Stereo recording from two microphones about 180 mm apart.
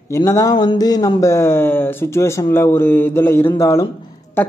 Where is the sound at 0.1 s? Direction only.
15° left (ahead or behind).